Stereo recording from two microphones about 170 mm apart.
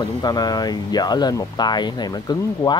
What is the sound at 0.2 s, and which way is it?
Speech, 25° left (ahead or behind).